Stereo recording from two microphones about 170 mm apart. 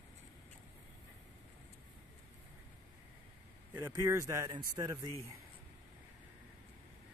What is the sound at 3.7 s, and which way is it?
Speech, 15° right (ahead or behind).